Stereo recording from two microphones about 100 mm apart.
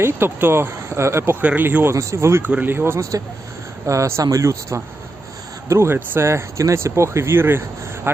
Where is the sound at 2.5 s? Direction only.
15° right (ahead or behind).